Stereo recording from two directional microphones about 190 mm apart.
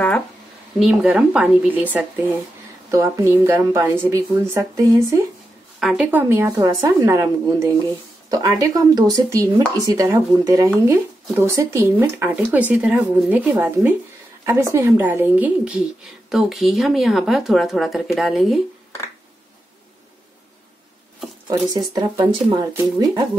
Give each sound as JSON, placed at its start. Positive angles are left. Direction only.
{"t": 0.7, "sound": "speech", "side_deg": -5}
{"t": 5.8, "sound": "speech", "side_deg": -5}
{"t": 21.7, "sound": "speech", "side_deg": -20}